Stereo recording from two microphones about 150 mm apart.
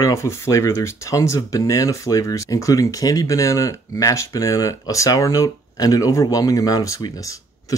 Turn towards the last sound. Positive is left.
turn(degrees=20)  # may be behind; listen again after turning